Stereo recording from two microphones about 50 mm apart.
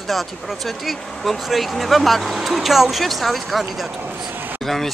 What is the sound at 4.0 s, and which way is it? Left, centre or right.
Speech, right.